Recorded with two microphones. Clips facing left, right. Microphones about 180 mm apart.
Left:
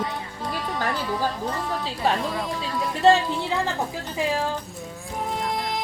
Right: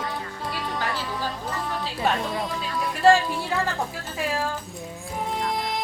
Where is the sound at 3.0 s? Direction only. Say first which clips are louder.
Even; 25° left (ahead or behind).